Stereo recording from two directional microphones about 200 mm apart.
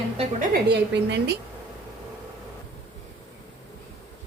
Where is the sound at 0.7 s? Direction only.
60° right (ahead or behind).